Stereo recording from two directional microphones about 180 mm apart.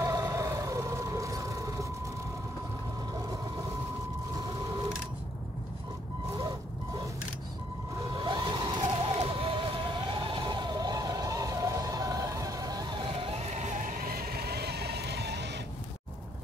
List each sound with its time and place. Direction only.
0.0 s vehicle: 20° right (ahead or behind)
8.1 s vehicle: 25° right (ahead or behind); by 15.5 s 70° right (ahead or behind)